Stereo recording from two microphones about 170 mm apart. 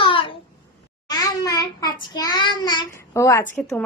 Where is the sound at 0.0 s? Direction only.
30° left (ahead or behind).